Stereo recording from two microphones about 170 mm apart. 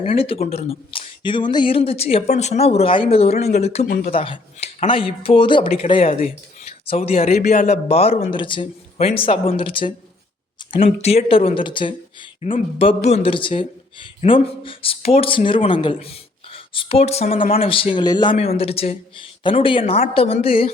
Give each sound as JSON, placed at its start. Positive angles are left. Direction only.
{"t": 0.0, "sound": "speech", "side_deg": 35}
{"t": 17.2, "sound": "speech", "side_deg": 55}
{"t": 17.5, "sound": "a man's voice", "side_deg": 35}
{"t": 18.3, "sound": "speech", "side_deg": 35}